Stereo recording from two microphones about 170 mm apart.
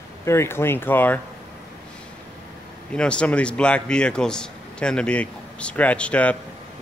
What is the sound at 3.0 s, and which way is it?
A man's voice, 5° left (ahead or behind).